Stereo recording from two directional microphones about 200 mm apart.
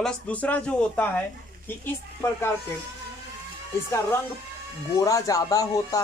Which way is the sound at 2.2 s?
15° left (ahead or behind).